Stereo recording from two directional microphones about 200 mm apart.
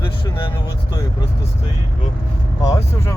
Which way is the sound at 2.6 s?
20° left (ahead or behind).